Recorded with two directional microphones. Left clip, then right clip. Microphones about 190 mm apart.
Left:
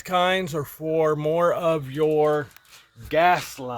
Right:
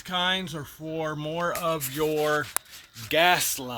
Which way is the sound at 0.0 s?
45° left (ahead or behind).